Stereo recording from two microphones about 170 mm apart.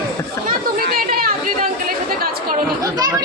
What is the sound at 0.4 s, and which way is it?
Chatter, 60° right (ahead or behind).